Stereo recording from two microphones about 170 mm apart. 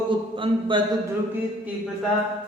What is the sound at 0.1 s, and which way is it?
Speech, 30° right (ahead or behind).